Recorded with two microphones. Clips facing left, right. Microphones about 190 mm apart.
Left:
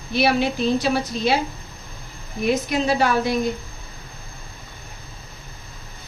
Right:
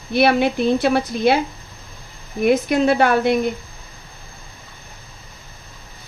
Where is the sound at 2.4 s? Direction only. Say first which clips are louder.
Right 5 dB; 55° right (ahead or behind).